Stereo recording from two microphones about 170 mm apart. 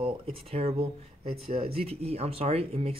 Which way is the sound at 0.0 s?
35° right (ahead or behind).